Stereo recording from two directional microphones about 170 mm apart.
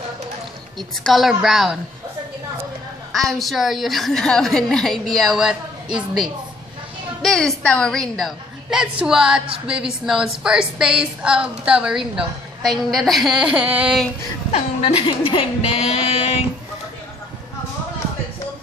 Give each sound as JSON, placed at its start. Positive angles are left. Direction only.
{"t": 1.0, "sound": "a woman's voice", "side_deg": 0}
{"t": 3.1, "sound": "a woman's voice", "side_deg": 0}
{"t": 7.2, "sound": "a woman's voice", "side_deg": 5}
{"t": 14.5, "sound": "speech", "side_deg": 35}